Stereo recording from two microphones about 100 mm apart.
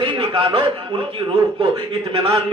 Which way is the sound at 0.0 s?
60° right (ahead or behind).